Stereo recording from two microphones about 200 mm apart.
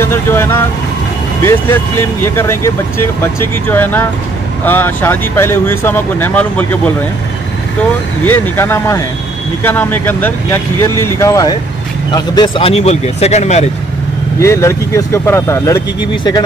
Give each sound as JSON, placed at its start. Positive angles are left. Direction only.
{"t": 0.0, "sound": "speech", "side_deg": 10}
{"t": 8.3, "sound": "speech", "side_deg": 10}
{"t": 14.4, "sound": "speech", "side_deg": 15}